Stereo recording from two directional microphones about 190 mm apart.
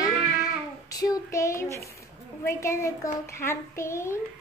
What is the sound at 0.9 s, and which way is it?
Child singing, 20° left (ahead or behind).